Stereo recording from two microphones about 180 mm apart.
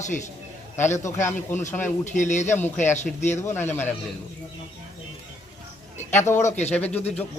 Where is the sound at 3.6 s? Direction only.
10° left (ahead or behind).